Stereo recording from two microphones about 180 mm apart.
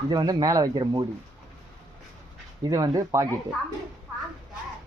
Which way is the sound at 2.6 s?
20° right (ahead or behind).